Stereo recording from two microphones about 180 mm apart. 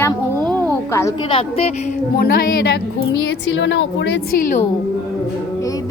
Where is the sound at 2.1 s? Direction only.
60° left (ahead or behind).